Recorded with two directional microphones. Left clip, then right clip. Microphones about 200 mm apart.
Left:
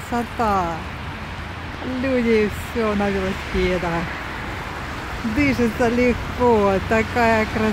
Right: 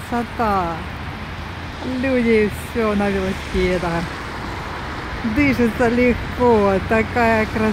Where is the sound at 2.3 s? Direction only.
Centre (ahead or behind).